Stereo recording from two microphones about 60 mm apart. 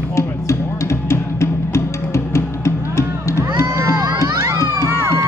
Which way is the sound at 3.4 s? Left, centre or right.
Right.